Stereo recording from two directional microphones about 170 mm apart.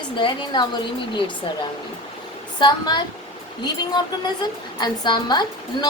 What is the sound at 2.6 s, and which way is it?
A woman's voice, 25° left (ahead or behind).